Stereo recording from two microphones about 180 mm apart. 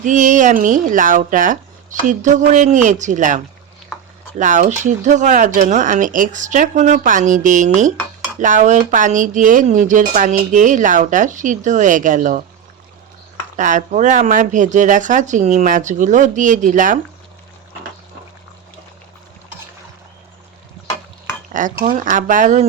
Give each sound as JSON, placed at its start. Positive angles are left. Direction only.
{"t": 0.0, "sound": "speech", "side_deg": -45}
{"t": 13.6, "sound": "speech", "side_deg": -45}
{"t": 21.8, "sound": "speech", "side_deg": -50}